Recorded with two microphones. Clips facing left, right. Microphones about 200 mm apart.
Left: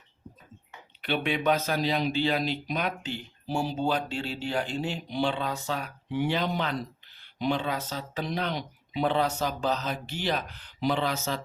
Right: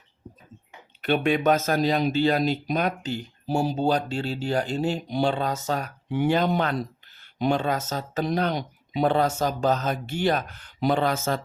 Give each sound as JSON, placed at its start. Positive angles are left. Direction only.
{"t": 1.0, "sound": "speech", "side_deg": -45}